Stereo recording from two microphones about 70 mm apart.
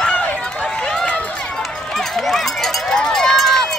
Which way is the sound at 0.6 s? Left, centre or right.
Centre.